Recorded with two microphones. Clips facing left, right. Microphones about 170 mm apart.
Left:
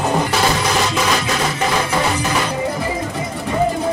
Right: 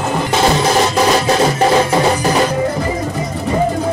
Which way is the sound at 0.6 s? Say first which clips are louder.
Right 5 dB; 35° right (ahead or behind).